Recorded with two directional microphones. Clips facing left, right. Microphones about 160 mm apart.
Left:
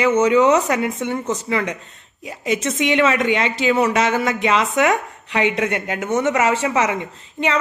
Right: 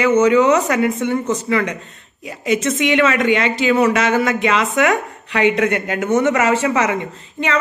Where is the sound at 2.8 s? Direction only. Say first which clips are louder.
Even; 25° left (ahead or behind).